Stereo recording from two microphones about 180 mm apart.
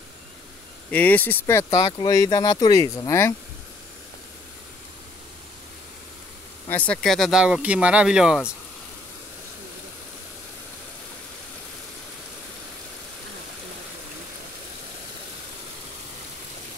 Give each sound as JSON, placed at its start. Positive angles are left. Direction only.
{"t": 0.9, "sound": "speech", "side_deg": 10}
{"t": 6.7, "sound": "speech", "side_deg": 5}